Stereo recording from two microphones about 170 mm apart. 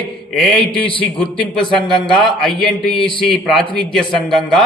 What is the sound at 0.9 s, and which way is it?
Speech, 30° left (ahead or behind).